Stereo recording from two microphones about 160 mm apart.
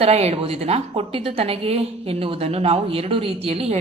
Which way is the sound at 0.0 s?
40° right (ahead or behind).